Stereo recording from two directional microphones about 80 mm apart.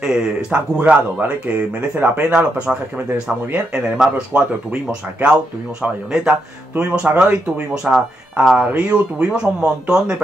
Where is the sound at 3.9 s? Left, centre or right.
Centre.